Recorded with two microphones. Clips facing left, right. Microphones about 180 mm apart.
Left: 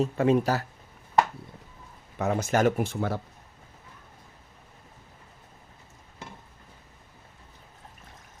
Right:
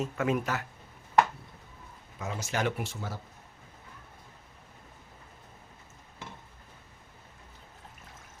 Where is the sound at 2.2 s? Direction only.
60° left (ahead or behind); by 2.9 s 45° left (ahead or behind).